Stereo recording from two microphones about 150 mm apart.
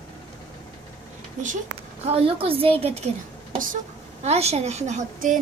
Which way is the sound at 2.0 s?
40° right (ahead or behind).